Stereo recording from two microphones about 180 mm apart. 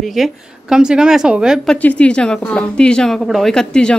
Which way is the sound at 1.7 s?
5° left (ahead or behind).